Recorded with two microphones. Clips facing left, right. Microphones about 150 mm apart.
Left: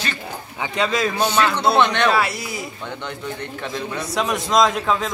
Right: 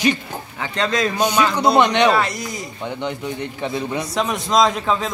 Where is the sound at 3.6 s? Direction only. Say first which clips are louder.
Right 4 dB; 20° right (ahead or behind).